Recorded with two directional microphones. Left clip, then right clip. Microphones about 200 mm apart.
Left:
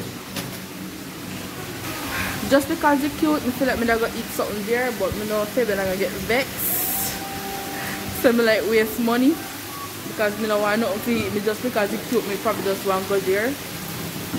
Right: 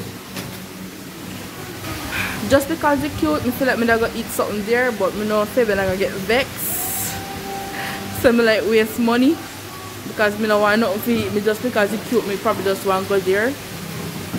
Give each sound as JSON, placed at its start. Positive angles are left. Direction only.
{"t": 2.5, "sound": "speech", "side_deg": -5}
{"t": 8.2, "sound": "speech", "side_deg": -10}